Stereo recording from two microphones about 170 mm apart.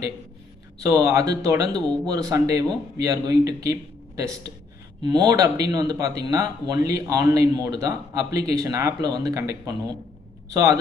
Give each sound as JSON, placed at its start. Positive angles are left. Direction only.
{"t": 0.9, "sound": "speech", "side_deg": -20}